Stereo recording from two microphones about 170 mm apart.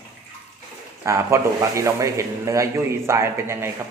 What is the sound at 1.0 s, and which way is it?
A man's voice, 15° right (ahead or behind).